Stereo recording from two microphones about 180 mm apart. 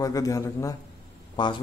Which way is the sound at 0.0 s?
20° left (ahead or behind).